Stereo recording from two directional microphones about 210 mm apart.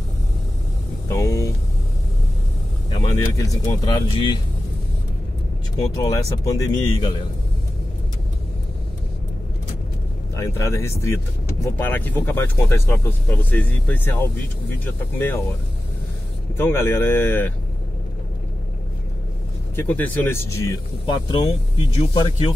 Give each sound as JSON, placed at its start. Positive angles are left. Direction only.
{"t": 1.0, "sound": "speech", "side_deg": 15}
{"t": 2.9, "sound": "speech", "side_deg": 20}
{"t": 5.8, "sound": "speech", "side_deg": 15}
{"t": 10.3, "sound": "speech", "side_deg": 15}
{"t": 16.5, "sound": "speech", "side_deg": 10}
{"t": 19.7, "sound": "speech", "side_deg": 10}